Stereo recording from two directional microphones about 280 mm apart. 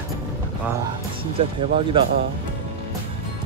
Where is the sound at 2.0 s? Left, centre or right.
Centre.